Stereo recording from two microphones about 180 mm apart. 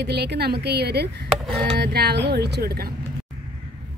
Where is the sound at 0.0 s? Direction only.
65° right (ahead or behind).